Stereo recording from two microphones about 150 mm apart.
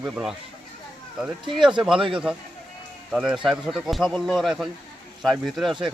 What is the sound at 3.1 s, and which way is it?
Speech, 5° right (ahead or behind).